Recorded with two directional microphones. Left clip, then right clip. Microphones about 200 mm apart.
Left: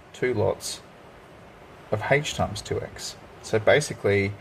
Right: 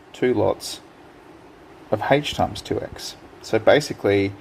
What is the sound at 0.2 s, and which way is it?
Speech, 40° right (ahead or behind).